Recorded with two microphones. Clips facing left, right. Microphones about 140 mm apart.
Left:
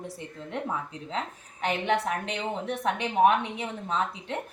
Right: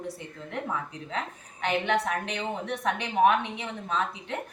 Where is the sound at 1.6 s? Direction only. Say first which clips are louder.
Even; 30° left (ahead or behind).